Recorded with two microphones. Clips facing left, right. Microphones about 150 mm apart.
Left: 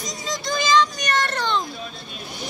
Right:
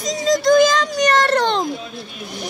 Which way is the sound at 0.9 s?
70° right (ahead or behind).